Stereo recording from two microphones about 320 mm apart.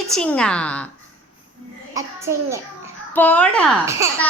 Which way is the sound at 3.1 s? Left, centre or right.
Centre.